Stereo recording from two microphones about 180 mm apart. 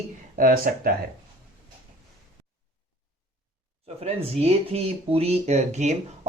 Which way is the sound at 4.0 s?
35° right (ahead or behind).